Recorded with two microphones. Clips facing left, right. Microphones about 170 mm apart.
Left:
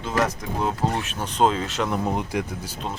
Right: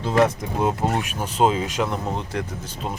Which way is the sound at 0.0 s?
25° right (ahead or behind).